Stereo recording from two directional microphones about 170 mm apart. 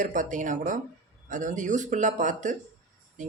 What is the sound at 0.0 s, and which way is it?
Speech, 50° right (ahead or behind).